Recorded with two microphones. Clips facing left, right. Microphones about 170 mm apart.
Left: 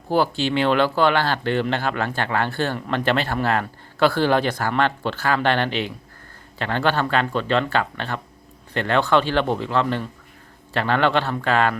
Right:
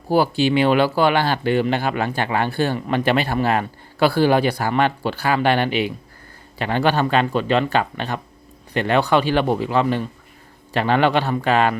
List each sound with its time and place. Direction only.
0.1 s speech: 10° right (ahead or behind)